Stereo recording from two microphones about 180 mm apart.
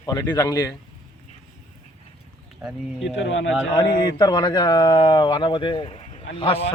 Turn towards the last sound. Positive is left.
turn(degrees=30)  # may be behind; listen again after turning